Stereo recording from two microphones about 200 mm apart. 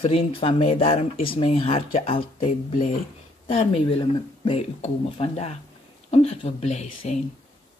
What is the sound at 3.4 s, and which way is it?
Speech, 30° left (ahead or behind).